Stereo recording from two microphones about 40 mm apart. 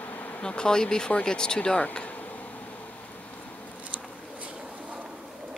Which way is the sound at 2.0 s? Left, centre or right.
Left.